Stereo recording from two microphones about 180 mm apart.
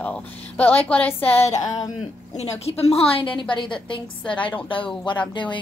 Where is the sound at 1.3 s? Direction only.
35° left (ahead or behind).